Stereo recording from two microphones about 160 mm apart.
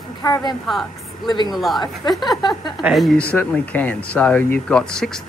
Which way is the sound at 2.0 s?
25° left (ahead or behind).